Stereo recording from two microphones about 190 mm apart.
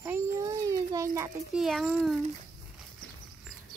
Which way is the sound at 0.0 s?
15° right (ahead or behind).